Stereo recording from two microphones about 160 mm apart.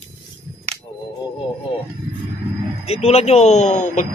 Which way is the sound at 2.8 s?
40° left (ahead or behind).